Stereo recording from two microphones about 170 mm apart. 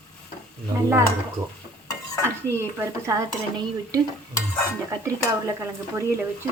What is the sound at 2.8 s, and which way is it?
A woman's voice, 20° right (ahead or behind).